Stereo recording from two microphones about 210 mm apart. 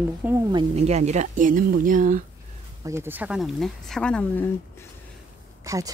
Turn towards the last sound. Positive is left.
turn(degrees=-15)  # may be behind; listen again after turning